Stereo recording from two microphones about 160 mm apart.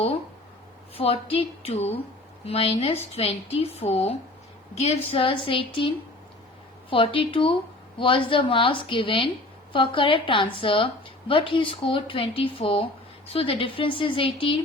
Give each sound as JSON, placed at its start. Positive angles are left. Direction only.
{"t": 0.9, "sound": "a woman's voice", "side_deg": 35}
{"t": 6.9, "sound": "a woman's voice", "side_deg": 35}